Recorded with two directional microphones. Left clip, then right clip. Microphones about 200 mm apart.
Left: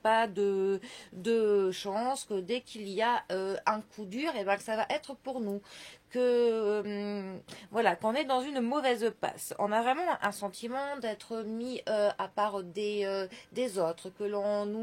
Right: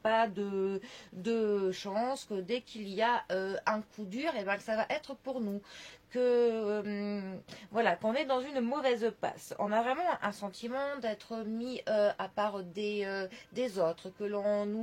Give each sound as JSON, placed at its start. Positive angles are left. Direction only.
{"t": 0.0, "sound": "speech", "side_deg": 50}